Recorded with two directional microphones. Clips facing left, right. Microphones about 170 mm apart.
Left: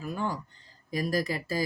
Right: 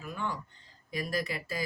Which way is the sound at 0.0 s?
40° left (ahead or behind).